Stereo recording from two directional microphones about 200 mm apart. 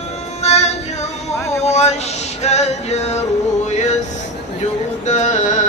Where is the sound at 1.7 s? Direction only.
35° left (ahead or behind).